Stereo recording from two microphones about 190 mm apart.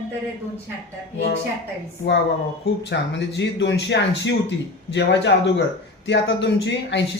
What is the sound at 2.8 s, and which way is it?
A man's voice, 65° left (ahead or behind).